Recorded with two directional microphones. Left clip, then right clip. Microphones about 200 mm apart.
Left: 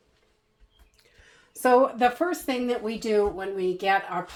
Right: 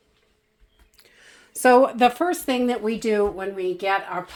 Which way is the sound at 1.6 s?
50° right (ahead or behind).